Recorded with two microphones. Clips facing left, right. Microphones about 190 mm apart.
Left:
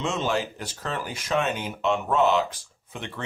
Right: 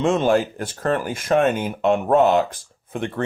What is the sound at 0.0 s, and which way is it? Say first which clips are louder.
Speech: right 9 dB; 55° right (ahead or behind).